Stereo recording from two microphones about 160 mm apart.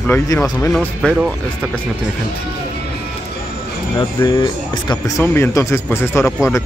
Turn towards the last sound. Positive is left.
turn(degrees=15)  # may be behind; listen again after turning